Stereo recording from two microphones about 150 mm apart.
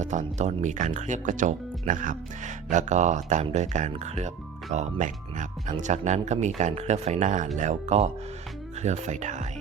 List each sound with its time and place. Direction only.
0.0 s speech: 55° right (ahead or behind)